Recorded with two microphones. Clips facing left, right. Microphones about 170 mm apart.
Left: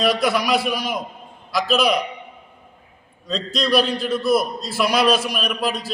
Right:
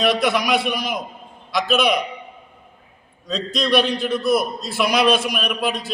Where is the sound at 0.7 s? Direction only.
30° left (ahead or behind).